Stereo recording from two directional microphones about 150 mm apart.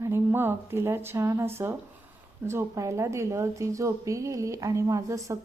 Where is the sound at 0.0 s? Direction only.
15° right (ahead or behind).